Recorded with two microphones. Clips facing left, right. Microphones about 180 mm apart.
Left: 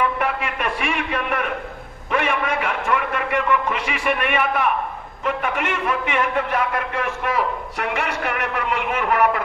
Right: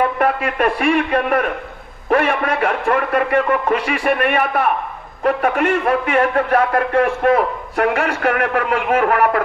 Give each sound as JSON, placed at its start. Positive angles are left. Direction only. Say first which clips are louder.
{"t": 0.2, "sound": "a man's voice", "louder": "right 7 dB", "side_deg": -35}
{"t": 6.3, "sound": "a man's voice", "louder": "right 6 dB", "side_deg": -55}